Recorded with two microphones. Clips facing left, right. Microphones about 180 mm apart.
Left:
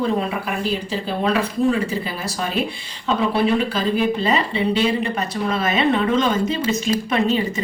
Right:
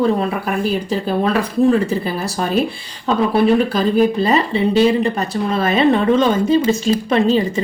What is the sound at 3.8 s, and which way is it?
Speech, 40° right (ahead or behind).